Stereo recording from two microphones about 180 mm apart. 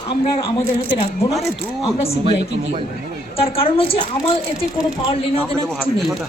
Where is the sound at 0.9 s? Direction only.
35° left (ahead or behind).